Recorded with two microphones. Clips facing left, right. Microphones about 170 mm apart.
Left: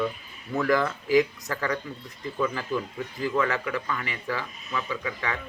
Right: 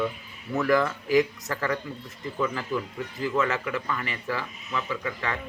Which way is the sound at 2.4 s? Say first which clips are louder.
Even; 10° left (ahead or behind).